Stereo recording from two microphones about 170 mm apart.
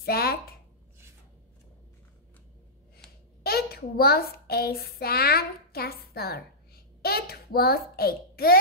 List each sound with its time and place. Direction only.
0.0 s speech: 65° left (ahead or behind)
3.0 s a woman's voice: 65° left (ahead or behind)